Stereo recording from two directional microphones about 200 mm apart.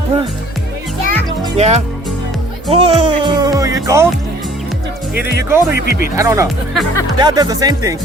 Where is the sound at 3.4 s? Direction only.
15° right (ahead or behind).